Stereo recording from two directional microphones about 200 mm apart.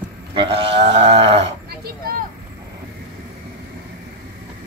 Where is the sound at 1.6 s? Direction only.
50° right (ahead or behind).